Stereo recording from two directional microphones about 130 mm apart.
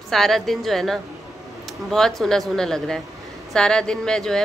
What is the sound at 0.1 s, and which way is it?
A woman's voice, centre (ahead or behind).